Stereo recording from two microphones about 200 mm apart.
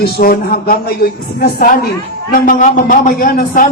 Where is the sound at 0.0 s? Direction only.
50° left (ahead or behind).